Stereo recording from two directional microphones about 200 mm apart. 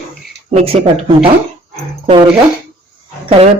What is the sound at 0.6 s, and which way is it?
Speech, 30° right (ahead or behind).